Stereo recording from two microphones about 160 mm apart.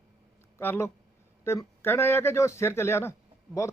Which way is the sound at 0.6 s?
15° left (ahead or behind).